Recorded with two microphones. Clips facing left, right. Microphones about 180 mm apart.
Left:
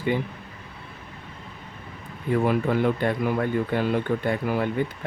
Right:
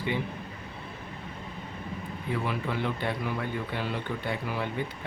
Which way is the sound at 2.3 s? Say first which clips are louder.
Left 9 dB; 50° left (ahead or behind).